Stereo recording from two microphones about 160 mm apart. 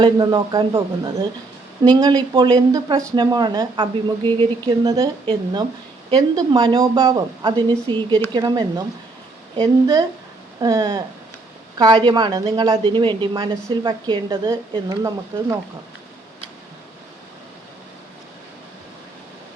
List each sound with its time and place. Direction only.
0.0 s a woman's voice: 25° right (ahead or behind)